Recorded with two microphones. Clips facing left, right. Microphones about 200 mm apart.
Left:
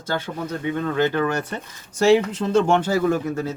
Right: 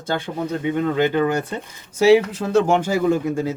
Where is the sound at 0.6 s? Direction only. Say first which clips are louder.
Right 2 dB; 15° right (ahead or behind).